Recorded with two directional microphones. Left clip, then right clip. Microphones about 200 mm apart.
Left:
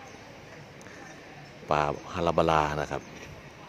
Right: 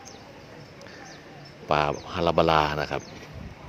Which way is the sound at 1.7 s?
5° left (ahead or behind).